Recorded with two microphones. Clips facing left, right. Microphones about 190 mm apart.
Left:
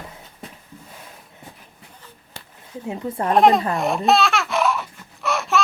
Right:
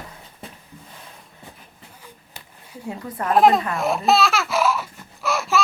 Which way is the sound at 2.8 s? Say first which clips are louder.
Left 3 dB; 25° left (ahead or behind).